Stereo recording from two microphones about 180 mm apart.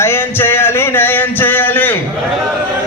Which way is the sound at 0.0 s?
15° left (ahead or behind).